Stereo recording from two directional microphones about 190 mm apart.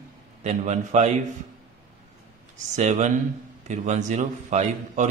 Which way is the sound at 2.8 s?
35° right (ahead or behind).